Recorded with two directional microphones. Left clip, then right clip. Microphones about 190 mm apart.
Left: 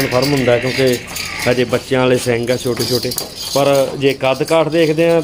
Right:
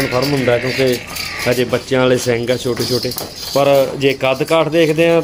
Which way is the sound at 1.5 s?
10° left (ahead or behind).